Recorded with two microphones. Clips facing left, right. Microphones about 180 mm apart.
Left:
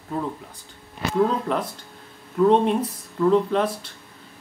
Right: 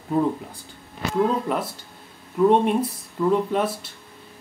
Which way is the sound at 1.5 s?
5° right (ahead or behind).